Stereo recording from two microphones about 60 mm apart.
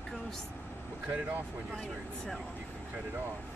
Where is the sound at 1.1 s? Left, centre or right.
Right.